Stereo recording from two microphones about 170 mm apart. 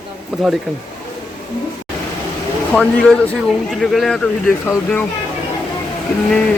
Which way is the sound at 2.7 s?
10° left (ahead or behind).